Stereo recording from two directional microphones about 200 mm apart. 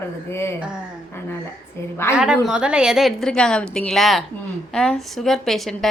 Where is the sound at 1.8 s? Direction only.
10° left (ahead or behind).